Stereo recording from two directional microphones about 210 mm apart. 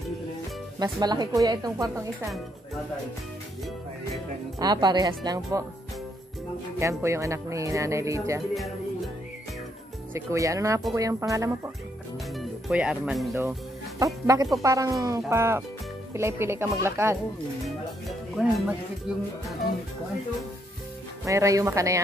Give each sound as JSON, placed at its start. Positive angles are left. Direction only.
{"t": 0.7, "sound": "speech", "side_deg": -15}
{"t": 4.6, "sound": "speech", "side_deg": -20}
{"t": 6.8, "sound": "speech", "side_deg": -15}
{"t": 8.5, "sound": "music", "side_deg": 0}
{"t": 10.1, "sound": "speech", "side_deg": -15}
{"t": 12.4, "sound": "speech", "side_deg": -5}
{"t": 13.9, "sound": "speech", "side_deg": -15}
{"t": 17.6, "sound": "speech", "side_deg": 0}
{"t": 21.3, "sound": "speech", "side_deg": -15}